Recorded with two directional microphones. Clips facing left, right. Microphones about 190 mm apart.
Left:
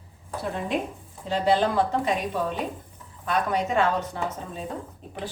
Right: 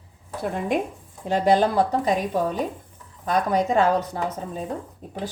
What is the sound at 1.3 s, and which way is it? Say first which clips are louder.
A woman's voice: right 3 dB; 45° right (ahead or behind).